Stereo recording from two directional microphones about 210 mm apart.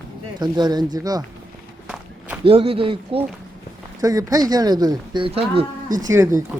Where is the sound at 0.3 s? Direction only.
20° right (ahead or behind).